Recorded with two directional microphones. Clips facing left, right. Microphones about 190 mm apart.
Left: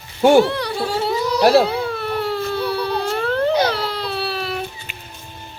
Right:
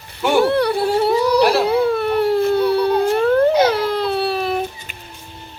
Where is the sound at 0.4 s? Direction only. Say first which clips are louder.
Right 6 dB; 55° right (ahead or behind).